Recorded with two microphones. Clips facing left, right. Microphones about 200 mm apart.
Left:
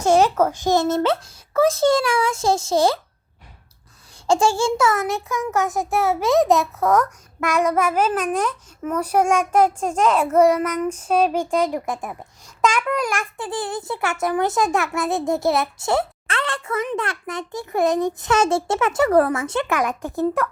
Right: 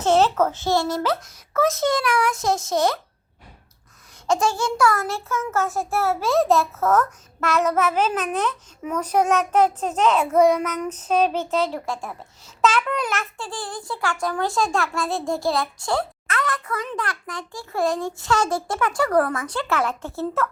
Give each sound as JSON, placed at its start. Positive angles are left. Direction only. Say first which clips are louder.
{"t": 0.0, "sound": "a child's voice", "louder": "left 2 dB", "side_deg": 10}
{"t": 4.3, "sound": "a child's voice", "louder": "left 4 dB", "side_deg": 30}